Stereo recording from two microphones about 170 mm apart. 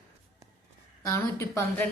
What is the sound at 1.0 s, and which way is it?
Speech, 15° left (ahead or behind).